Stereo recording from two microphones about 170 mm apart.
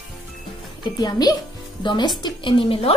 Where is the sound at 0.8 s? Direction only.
25° left (ahead or behind).